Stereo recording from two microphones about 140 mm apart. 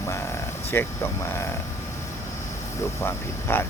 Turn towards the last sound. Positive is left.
turn(degrees=15)  # may be behind; listen again after turning